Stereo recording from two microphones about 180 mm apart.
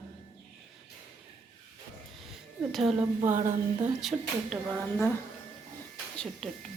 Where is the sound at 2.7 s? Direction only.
Centre (ahead or behind).